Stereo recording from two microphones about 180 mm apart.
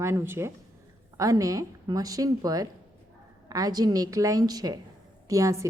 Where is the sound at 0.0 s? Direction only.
15° right (ahead or behind).